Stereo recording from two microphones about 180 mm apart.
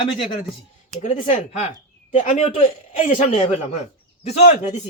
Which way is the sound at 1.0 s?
40° left (ahead or behind).